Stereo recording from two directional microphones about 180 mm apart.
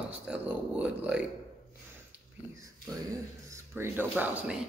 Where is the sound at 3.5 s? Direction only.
10° right (ahead or behind).